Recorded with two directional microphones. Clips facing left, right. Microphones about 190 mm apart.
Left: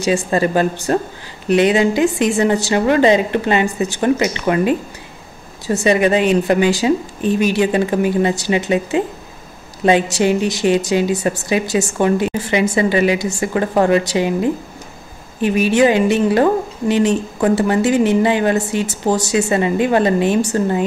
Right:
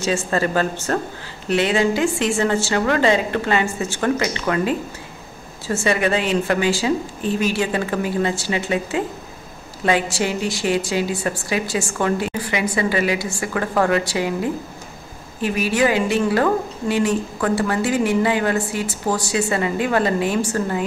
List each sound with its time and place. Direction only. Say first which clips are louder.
0.0 s a woman's voice: left 4 dB; 15° left (ahead or behind)